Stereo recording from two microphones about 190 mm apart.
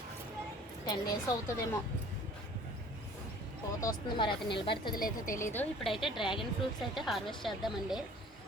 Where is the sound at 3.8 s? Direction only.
20° left (ahead or behind).